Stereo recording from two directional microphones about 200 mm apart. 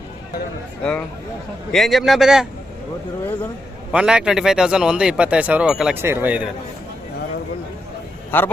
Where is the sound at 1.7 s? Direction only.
Centre (ahead or behind).